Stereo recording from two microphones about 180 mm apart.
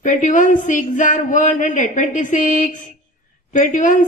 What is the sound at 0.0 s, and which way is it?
Speech, 45° left (ahead or behind).